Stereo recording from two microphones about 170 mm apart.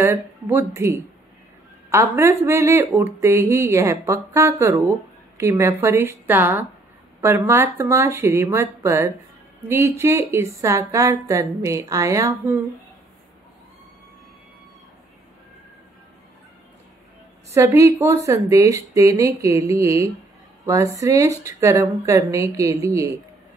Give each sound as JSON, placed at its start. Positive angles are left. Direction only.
{"t": 0.0, "sound": "speech", "side_deg": -15}
{"t": 17.6, "sound": "speech", "side_deg": -15}